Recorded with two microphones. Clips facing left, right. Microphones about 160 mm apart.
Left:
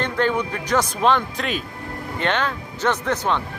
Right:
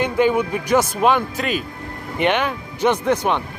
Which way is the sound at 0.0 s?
10° right (ahead or behind).